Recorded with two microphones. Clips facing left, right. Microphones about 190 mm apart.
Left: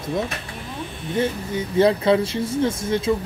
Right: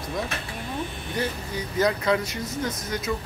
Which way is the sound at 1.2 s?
25° left (ahead or behind).